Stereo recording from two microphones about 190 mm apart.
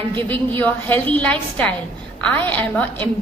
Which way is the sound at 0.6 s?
10° left (ahead or behind).